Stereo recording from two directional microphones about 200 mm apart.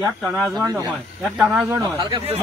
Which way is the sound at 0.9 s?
Centre (ahead or behind).